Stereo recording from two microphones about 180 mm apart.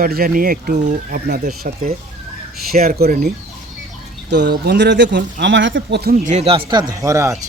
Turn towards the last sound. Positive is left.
turn(degrees=-15)  # may be behind; listen again after turning